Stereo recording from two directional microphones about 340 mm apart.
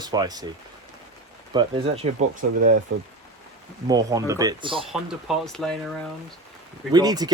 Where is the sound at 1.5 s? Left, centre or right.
Centre.